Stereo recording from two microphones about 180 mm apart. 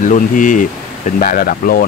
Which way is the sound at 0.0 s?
45° left (ahead or behind).